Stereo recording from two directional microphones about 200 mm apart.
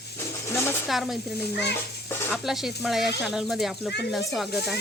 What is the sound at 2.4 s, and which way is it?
Music, centre (ahead or behind).